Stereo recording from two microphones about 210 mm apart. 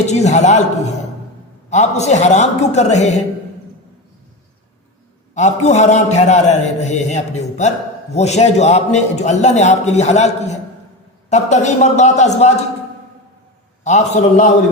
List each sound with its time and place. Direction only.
0.0 s a man's voice: 35° left (ahead or behind)
5.3 s a man's voice: 35° left (ahead or behind)
13.8 s a man's voice: 35° left (ahead or behind)